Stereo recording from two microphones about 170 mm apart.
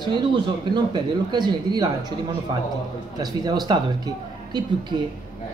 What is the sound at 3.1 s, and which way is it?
Speech, 25° right (ahead or behind).